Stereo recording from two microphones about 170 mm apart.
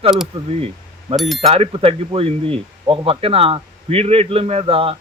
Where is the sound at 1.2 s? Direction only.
Centre (ahead or behind).